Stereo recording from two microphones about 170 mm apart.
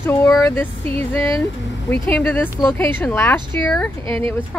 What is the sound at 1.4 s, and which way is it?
Speech, 10° left (ahead or behind).